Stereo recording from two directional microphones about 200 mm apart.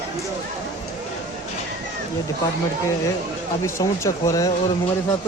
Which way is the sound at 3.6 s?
15° left (ahead or behind).